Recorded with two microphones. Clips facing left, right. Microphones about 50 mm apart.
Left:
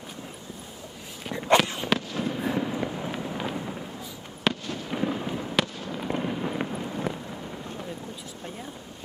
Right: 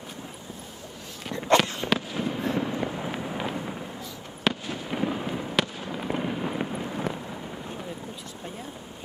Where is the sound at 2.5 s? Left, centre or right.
Centre.